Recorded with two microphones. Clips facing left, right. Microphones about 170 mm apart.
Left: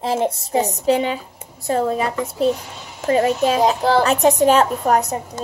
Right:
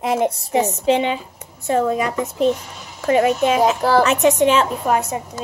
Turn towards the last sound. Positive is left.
turn(degrees=40)  # may be behind; listen again after turning